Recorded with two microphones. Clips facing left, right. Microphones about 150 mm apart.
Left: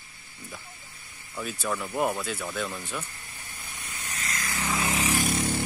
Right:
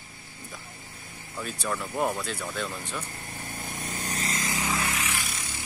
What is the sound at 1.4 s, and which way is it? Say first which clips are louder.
Speech: left 1 dB; 5° left (ahead or behind).